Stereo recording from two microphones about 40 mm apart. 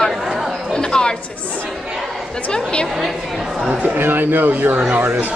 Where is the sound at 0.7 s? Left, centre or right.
Left.